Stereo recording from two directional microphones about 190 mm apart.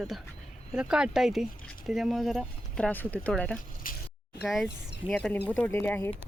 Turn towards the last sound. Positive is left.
turn(degrees=10)  # may be behind; listen again after turning